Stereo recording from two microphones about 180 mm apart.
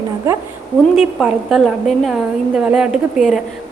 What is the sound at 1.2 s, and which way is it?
A woman's voice, centre (ahead or behind).